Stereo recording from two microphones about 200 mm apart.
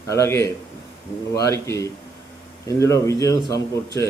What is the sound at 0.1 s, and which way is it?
A man's voice, 15° left (ahead or behind).